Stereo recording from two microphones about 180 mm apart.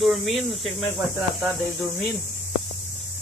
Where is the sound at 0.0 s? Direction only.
Centre (ahead or behind).